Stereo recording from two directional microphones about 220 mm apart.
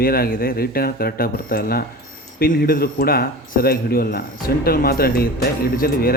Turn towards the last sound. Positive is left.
turn(degrees=40)  # may be behind; listen again after turning